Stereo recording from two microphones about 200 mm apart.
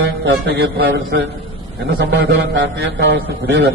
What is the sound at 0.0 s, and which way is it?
A man's voice, 60° right (ahead or behind).